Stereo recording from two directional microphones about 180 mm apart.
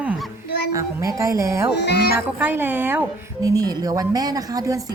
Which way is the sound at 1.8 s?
65° left (ahead or behind).